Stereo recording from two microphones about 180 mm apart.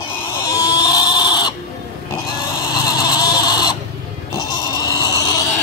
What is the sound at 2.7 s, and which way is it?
Squeal, 20° left (ahead or behind).